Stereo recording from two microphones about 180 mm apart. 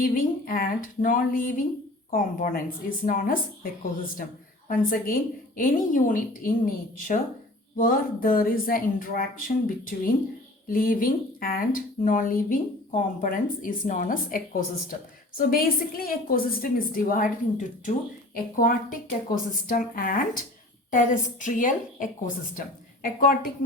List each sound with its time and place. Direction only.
0.0 s speech: 50° left (ahead or behind)
4.7 s speech: 50° left (ahead or behind)